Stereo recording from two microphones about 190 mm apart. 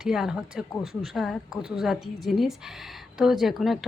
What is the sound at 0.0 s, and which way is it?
A woman's voice, 5° right (ahead or behind).